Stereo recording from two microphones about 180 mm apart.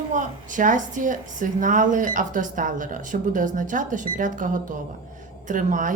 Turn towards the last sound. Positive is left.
turn(degrees=-45)  # may be behind; listen again after turning